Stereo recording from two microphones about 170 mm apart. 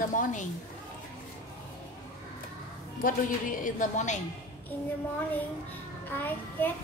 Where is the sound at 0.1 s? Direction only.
50° left (ahead or behind).